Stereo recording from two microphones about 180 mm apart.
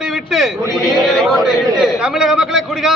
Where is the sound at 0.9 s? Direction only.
Centre (ahead or behind).